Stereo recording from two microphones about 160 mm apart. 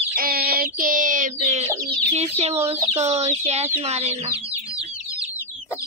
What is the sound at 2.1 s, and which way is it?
Speech, 40° right (ahead or behind).